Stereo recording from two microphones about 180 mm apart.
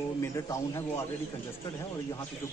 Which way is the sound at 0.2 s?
15° left (ahead or behind).